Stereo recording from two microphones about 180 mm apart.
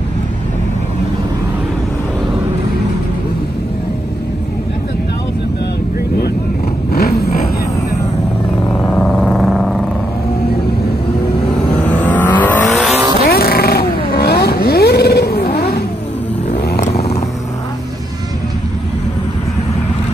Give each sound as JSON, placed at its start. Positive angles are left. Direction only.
{"t": 7.2, "sound": "vehicle", "side_deg": 55}
{"t": 8.8, "sound": "vehicle", "side_deg": 5}
{"t": 11.8, "sound": "vehicle", "side_deg": 10}
{"t": 13.3, "sound": "vehicle", "side_deg": 60}
{"t": 16.8, "sound": "vehicle", "side_deg": 35}